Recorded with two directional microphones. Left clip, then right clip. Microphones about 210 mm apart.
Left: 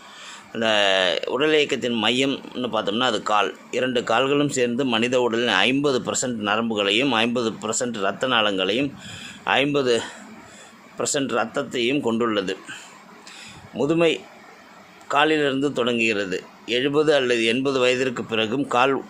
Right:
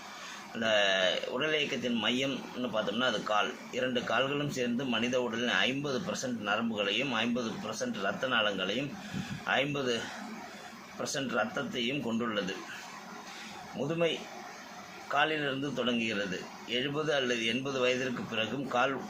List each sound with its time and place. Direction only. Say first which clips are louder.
0.6 s speech: left 8 dB; 55° left (ahead or behind)
11.0 s speech: left 9 dB; 55° left (ahead or behind)
13.7 s speech: left 11 dB; 55° left (ahead or behind)